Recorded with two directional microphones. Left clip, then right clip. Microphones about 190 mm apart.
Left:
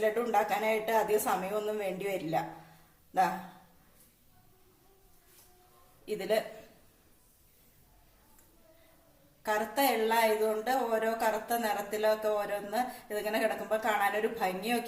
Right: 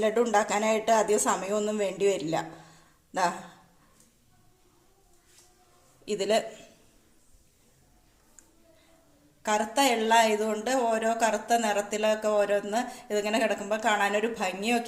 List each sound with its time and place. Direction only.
0.0 s speech: 45° right (ahead or behind)
6.1 s speech: 45° right (ahead or behind)
9.4 s speech: 45° right (ahead or behind)